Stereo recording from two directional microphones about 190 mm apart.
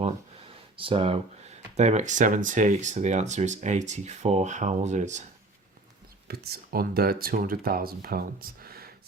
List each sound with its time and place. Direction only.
0.0 s speech: 30° right (ahead or behind)
6.2 s speech: 55° right (ahead or behind)